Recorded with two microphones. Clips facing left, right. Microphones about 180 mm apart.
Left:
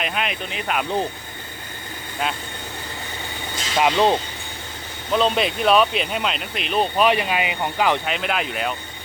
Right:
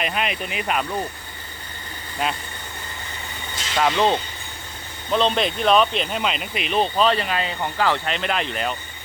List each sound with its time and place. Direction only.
0.0 s speech: centre (ahead or behind)
3.8 s speech: 15° left (ahead or behind)
5.1 s speech: 5° left (ahead or behind)
6.9 s speech: 10° left (ahead or behind)
8.0 s speech: 5° left (ahead or behind)